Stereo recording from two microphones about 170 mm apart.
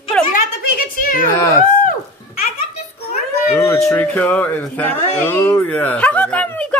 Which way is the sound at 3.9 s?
10° left (ahead or behind).